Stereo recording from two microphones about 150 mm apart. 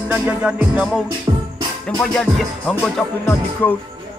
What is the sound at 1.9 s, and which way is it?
Music, 5° left (ahead or behind).